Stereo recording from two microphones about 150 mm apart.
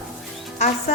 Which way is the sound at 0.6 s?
45° left (ahead or behind).